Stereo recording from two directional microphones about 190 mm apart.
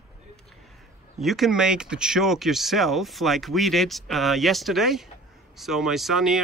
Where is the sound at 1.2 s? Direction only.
Centre (ahead or behind).